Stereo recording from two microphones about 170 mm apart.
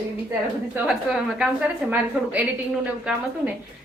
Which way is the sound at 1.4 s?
10° right (ahead or behind).